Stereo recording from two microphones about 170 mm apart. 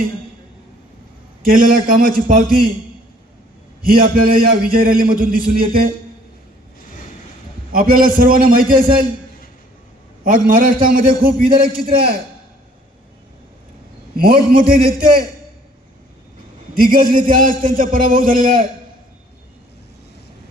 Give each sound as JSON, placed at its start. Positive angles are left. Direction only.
{"t": 1.5, "sound": "a man's voice", "side_deg": -55}
{"t": 4.0, "sound": "a man's voice", "side_deg": -55}
{"t": 7.7, "sound": "a man's voice", "side_deg": -55}
{"t": 10.2, "sound": "a man's voice", "side_deg": -55}
{"t": 14.2, "sound": "a man's voice", "side_deg": -60}
{"t": 16.8, "sound": "a man's voice", "side_deg": -55}